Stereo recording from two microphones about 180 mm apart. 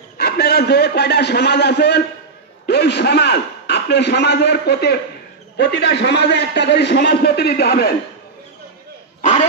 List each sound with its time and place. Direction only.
0.2 s a man's voice: 65° left (ahead or behind)
9.2 s dog: 40° left (ahead or behind)